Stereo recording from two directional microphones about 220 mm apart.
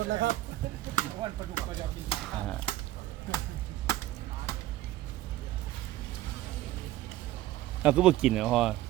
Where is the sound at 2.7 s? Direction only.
25° left (ahead or behind).